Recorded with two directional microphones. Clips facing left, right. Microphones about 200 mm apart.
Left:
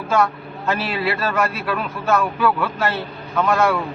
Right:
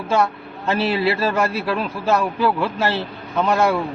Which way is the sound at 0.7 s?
30° right (ahead or behind).